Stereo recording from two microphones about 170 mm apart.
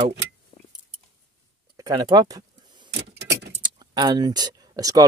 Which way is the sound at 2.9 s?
75° right (ahead or behind).